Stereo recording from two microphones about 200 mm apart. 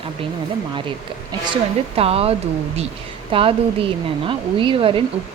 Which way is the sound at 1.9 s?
30° right (ahead or behind).